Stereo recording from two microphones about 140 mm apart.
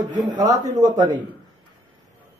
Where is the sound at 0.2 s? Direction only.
30° right (ahead or behind).